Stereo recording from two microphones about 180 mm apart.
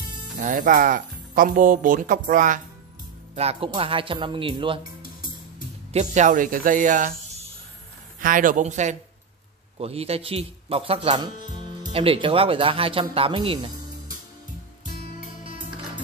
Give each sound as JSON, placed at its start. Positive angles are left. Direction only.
{"t": 0.4, "sound": "speech", "side_deg": -45}
{"t": 3.3, "sound": "speech", "side_deg": -35}
{"t": 5.9, "sound": "speech", "side_deg": -40}
{"t": 8.2, "sound": "speech", "side_deg": -50}